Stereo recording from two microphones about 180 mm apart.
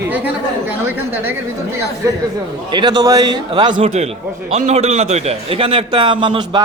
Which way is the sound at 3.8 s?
35° right (ahead or behind).